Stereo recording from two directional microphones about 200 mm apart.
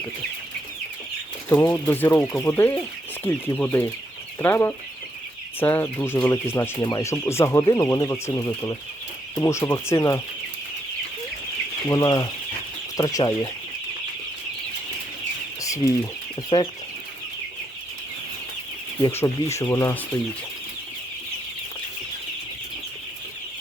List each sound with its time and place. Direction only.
1.5 s speech: 15° left (ahead or behind)
11.9 s speech: 20° left (ahead or behind)
15.6 s speech: 15° left (ahead or behind)
16.5 s speech: 25° left (ahead or behind)
19.0 s speech: 10° left (ahead or behind)